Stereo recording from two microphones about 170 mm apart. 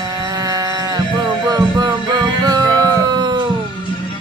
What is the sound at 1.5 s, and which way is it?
Music, 25° right (ahead or behind).